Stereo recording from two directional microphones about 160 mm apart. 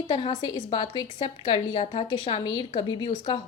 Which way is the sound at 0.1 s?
30° left (ahead or behind).